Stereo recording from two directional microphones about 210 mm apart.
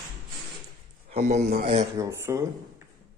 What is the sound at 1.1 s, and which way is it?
Speech, 35° right (ahead or behind).